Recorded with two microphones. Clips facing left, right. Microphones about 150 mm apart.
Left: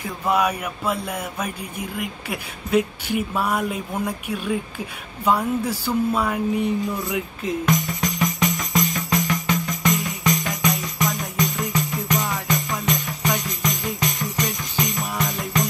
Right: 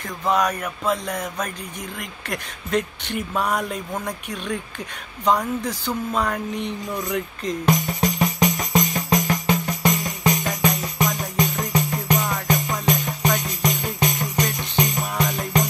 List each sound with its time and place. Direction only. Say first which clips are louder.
0.0 s speech: even; 10° left (ahead or behind)
7.6 s music: right 3 dB; 30° right (ahead or behind)
13.6 s jingle bell: right 2 dB; 30° right (ahead or behind)